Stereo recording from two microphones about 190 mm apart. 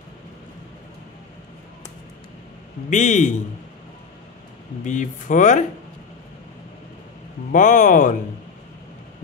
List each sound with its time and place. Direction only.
2.9 s speech: 40° left (ahead or behind)
4.8 s speech: 40° left (ahead or behind)
7.5 s speech: 40° left (ahead or behind)